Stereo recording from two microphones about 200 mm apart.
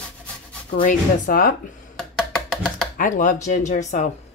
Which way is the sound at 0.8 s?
45° left (ahead or behind).